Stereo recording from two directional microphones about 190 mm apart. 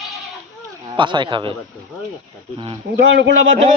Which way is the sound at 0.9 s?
25° right (ahead or behind).